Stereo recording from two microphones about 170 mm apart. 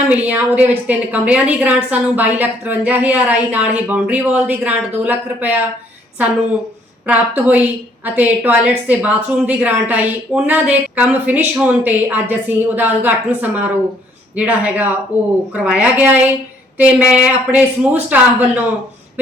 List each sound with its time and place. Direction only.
0.3 s a woman's voice: 10° right (ahead or behind)
7.1 s a woman's voice: 10° right (ahead or behind)